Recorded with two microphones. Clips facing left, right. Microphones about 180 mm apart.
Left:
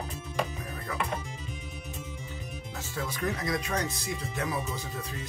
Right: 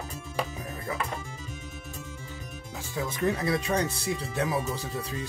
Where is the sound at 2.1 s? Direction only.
20° left (ahead or behind).